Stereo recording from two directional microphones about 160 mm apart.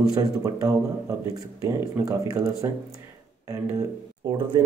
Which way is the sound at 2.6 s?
20° right (ahead or behind).